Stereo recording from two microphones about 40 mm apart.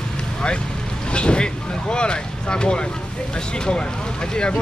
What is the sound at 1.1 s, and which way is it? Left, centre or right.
Vehicle, left.